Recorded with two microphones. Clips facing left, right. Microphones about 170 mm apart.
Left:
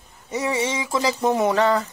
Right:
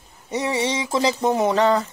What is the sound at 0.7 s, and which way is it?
Speech, 25° right (ahead or behind).